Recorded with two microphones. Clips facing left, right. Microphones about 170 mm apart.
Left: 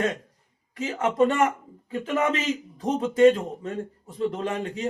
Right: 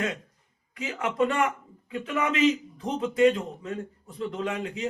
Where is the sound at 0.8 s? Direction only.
45° left (ahead or behind).